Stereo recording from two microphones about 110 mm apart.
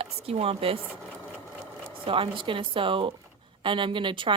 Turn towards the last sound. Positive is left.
turn(degrees=-50)  # may be behind; listen again after turning